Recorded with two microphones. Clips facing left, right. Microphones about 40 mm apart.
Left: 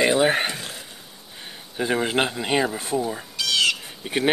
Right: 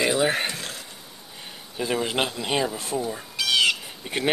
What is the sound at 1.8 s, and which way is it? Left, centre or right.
Speech, left.